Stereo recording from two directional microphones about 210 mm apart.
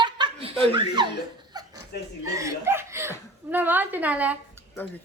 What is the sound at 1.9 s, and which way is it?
Speech, 45° left (ahead or behind).